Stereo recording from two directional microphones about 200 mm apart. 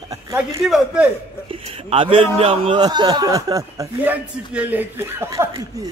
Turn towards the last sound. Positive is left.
turn(degrees=-15)  # may be behind; listen again after turning